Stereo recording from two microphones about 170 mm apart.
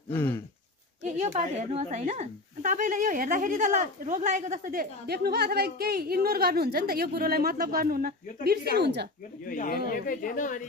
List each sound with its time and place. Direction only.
0.1 s a sound: 15° left (ahead or behind)
1.0 s a woman's voice: 45° right (ahead or behind); by 8.1 s 60° right (ahead or behind)
8.5 s speech: 70° right (ahead or behind)
9.4 s speech: 55° left (ahead or behind)